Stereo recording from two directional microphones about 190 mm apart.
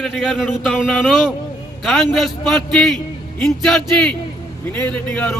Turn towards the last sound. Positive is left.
turn(degrees=10)  # may be behind; listen again after turning